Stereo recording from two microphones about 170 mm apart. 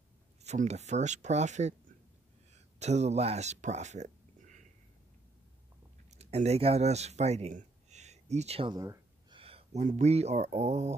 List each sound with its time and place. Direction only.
0.4 s speech: 40° right (ahead or behind)
6.0 s speech: 40° right (ahead or behind)
8.7 s speech: 15° right (ahead or behind)
9.3 s speech: 35° right (ahead or behind)